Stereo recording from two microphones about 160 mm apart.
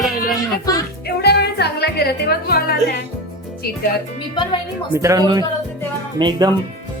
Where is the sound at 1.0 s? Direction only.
90° left; by 2.7 s 70° left (ahead or behind).